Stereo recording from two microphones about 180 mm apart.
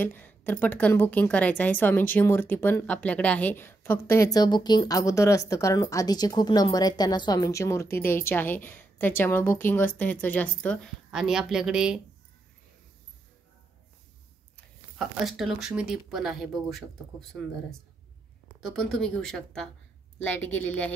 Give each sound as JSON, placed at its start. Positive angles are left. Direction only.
{"t": 0.0, "sound": "a woman's voice", "side_deg": 10}
{"t": 15.0, "sound": "a woman's voice", "side_deg": 0}
{"t": 18.8, "sound": "a woman's voice", "side_deg": 5}